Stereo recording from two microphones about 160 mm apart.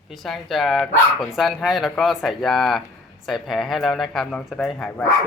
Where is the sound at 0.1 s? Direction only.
Centre (ahead or behind).